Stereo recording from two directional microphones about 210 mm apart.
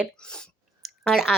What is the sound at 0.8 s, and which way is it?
Clicking, centre (ahead or behind).